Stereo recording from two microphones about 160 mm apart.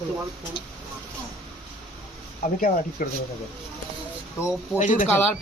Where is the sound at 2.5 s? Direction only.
60° left (ahead or behind).